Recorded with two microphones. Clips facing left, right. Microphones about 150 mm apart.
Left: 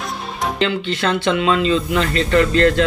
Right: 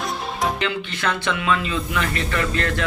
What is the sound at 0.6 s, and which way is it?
Speech, 30° left (ahead or behind).